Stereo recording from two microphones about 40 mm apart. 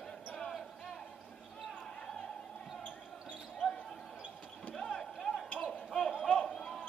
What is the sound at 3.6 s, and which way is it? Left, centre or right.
Basketball bounce, left.